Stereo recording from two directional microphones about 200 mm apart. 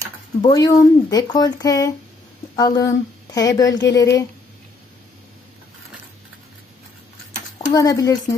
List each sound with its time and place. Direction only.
0.4 s speech: 20° left (ahead or behind)
7.7 s speech: 15° left (ahead or behind)